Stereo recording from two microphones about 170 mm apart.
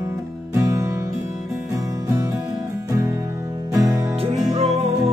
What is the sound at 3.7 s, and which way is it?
Music, 20° right (ahead or behind).